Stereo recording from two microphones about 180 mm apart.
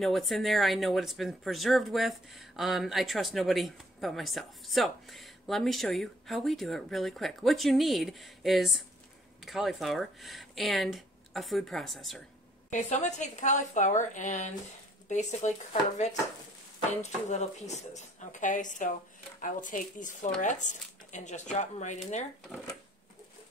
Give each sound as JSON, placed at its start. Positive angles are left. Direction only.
{"t": 0.0, "sound": "speech", "side_deg": 0}
{"t": 12.7, "sound": "a woman's voice", "side_deg": 40}